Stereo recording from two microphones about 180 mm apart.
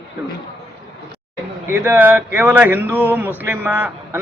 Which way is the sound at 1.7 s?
10° right (ahead or behind).